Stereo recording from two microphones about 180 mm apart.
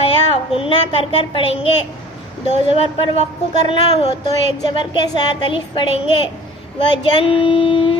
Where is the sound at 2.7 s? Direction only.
30° left (ahead or behind).